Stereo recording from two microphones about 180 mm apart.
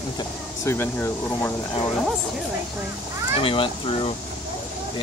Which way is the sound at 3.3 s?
30° left (ahead or behind).